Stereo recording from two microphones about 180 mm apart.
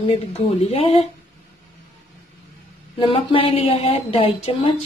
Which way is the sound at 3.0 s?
30° left (ahead or behind).